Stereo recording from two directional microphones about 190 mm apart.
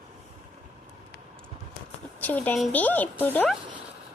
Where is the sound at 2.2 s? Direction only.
10° left (ahead or behind).